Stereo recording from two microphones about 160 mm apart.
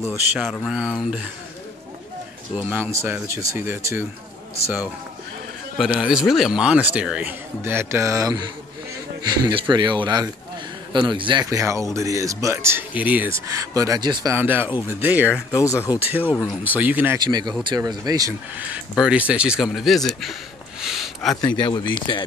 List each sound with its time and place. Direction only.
0.4 s speech: 5° left (ahead or behind)
2.5 s speech: 10° right (ahead or behind)
5.8 s a man's voice: 5° right (ahead or behind); by 11.4 s 30° right (ahead or behind)
11.4 s speech: 20° right (ahead or behind)
13.5 s speech: 20° right (ahead or behind)
14.3 s speech: 10° right (ahead or behind)
15.5 s speech: 20° left (ahead or behind)
16.6 s speech: 10° right (ahead or behind)
17.2 s speech: 25° right (ahead or behind)
18.6 s speech: 5° right (ahead or behind)
20.8 s a sound: centre (ahead or behind)
21.5 s speech: 30° left (ahead or behind)